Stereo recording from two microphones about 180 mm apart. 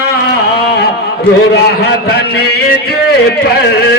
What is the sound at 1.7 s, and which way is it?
A man's voice, 65° left (ahead or behind).